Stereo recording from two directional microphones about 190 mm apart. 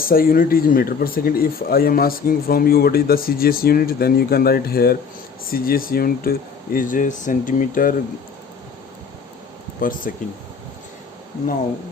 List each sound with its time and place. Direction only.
0.0 s speech: 50° left (ahead or behind)
9.8 s speech: 45° left (ahead or behind)